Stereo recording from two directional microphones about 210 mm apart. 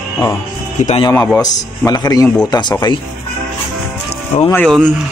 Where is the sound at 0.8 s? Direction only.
35° left (ahead or behind).